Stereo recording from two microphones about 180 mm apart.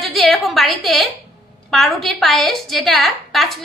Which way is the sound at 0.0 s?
Centre (ahead or behind).